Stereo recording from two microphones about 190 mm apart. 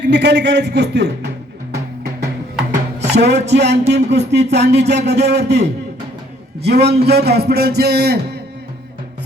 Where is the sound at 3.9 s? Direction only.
65° right (ahead or behind).